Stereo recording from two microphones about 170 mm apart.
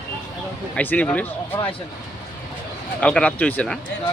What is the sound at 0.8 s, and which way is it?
Speech, 10° left (ahead or behind).